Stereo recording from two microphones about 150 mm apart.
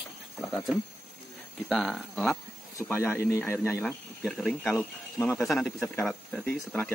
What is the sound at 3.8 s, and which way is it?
Speech, centre (ahead or behind).